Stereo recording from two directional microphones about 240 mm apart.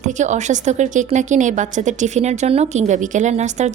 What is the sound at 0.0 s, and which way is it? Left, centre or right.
A woman's voice, right.